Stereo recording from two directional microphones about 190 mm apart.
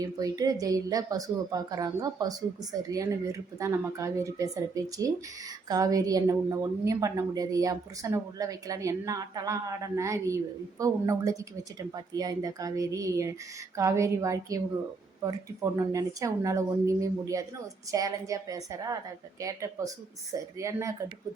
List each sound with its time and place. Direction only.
0.0 s a woman's voice: 20° right (ahead or behind)